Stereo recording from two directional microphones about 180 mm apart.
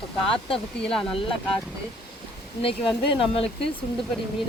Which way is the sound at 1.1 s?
30° left (ahead or behind).